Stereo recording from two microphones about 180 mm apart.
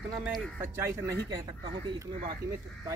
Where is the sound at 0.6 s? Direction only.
15° right (ahead or behind).